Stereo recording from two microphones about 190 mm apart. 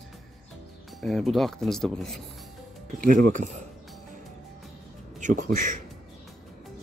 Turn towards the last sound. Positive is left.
turn(degrees=-45)  # may be behind; listen again after turning